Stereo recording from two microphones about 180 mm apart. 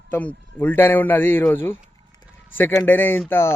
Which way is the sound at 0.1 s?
10° left (ahead or behind).